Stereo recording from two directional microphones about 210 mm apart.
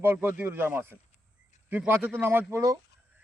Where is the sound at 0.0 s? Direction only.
10° right (ahead or behind).